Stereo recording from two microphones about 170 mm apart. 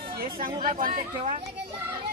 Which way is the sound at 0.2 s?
55° right (ahead or behind).